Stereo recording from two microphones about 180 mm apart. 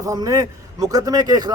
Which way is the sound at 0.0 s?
20° right (ahead or behind).